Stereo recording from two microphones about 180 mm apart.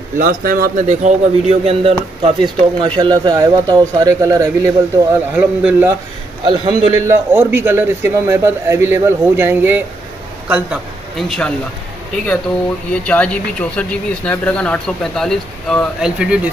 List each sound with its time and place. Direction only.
0.2 s speech: 50° right (ahead or behind)
0.8 s a man's voice: 35° right (ahead or behind); by 4.7 s 15° right (ahead or behind)
5.3 s speech: 5° right (ahead or behind)
6.4 s a man's voice: 25° right (ahead or behind)
7.1 s speech: 10° right (ahead or behind)
12.9 s speech: 5° left (ahead or behind)